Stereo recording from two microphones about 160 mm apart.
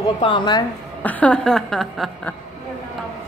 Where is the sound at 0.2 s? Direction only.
30° left (ahead or behind).